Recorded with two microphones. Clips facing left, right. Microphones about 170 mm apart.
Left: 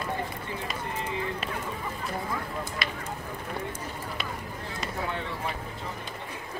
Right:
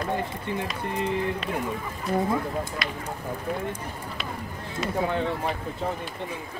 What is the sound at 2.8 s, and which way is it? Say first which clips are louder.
Speech: right 2 dB; centre (ahead or behind).